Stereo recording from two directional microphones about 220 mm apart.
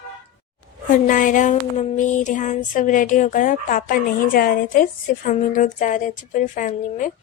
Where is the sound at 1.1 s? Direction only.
35° left (ahead or behind).